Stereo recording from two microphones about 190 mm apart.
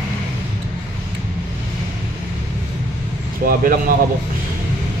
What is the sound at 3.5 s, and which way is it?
Speech, 50° right (ahead or behind).